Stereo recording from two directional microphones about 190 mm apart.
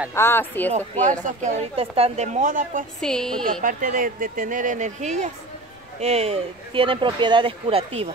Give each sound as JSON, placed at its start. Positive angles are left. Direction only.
{"t": 0.1, "sound": "speech", "side_deg": 15}
{"t": 0.7, "sound": "a woman's voice", "side_deg": -40}
{"t": 3.0, "sound": "a woman's voice", "side_deg": 5}
{"t": 3.6, "sound": "speech", "side_deg": -45}